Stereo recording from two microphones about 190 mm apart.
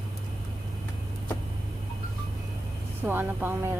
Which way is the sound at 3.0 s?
10° right (ahead or behind).